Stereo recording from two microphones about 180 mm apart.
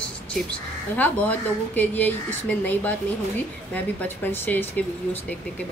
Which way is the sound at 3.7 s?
10° left (ahead or behind).